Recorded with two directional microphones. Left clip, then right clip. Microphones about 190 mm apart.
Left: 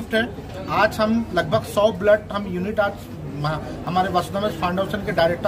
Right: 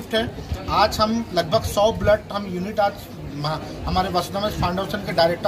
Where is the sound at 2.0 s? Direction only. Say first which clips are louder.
Left 2 dB; 5° left (ahead or behind).